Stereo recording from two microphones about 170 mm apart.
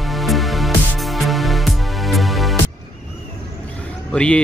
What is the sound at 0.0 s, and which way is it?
Music, centre (ahead or behind).